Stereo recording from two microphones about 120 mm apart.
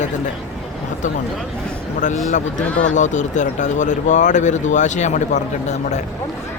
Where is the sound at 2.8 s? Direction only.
90° left.